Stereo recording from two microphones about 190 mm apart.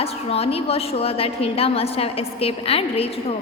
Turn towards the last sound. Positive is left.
turn(degrees=30)  # may be behind; listen again after turning